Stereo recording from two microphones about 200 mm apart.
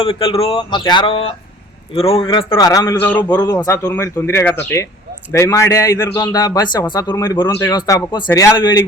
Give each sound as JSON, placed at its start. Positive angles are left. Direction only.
{"t": 0.0, "sound": "a man's voice", "side_deg": 25}